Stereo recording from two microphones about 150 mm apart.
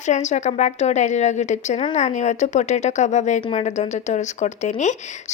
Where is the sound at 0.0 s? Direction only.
50° left (ahead or behind).